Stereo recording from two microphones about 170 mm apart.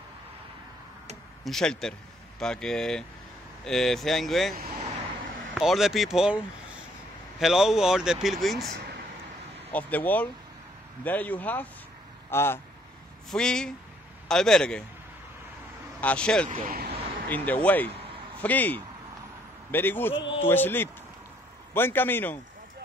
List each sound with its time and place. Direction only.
1.4 s a man's voice: 5° left (ahead or behind)
13.3 s a man's voice: 5° left (ahead or behind)
16.0 s a man's voice: 5° left (ahead or behind)
16.4 s speech: 50° right (ahead or behind)
17.3 s speech: 10° left (ahead or behind)